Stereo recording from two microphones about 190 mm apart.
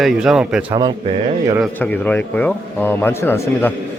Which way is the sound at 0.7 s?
20° right (ahead or behind).